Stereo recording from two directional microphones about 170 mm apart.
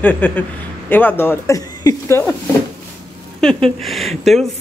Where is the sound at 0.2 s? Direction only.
10° left (ahead or behind).